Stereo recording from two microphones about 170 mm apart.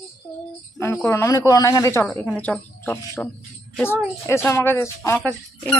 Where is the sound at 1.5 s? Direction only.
20° left (ahead or behind).